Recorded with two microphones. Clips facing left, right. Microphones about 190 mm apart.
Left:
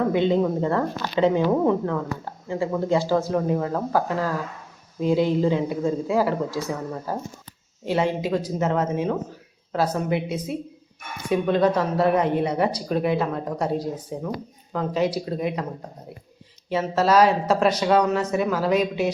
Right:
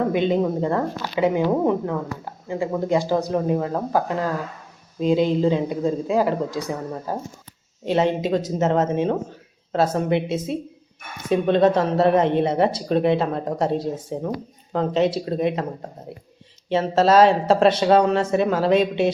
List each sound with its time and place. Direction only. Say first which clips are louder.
0.1 s speech: even; 15° right (ahead or behind)
16.6 s speech: right 3 dB; 25° right (ahead or behind)